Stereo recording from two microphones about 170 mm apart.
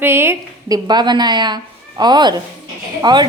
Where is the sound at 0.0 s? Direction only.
15° right (ahead or behind).